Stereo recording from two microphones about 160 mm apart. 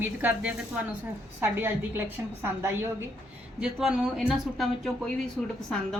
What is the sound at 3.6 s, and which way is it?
A woman's voice, 5° right (ahead or behind).